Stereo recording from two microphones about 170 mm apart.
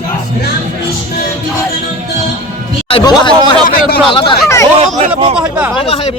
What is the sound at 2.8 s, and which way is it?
Speech, 30° left (ahead or behind).